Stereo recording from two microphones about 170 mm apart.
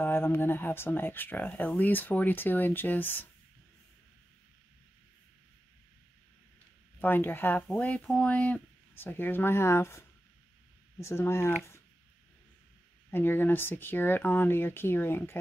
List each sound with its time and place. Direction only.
0.0 s speech: 10° left (ahead or behind)
7.0 s speech: 10° left (ahead or behind)
13.1 s speech: 10° left (ahead or behind)